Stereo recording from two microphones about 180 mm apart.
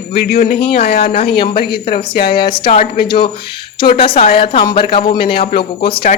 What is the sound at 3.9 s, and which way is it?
Speech, 30° left (ahead or behind).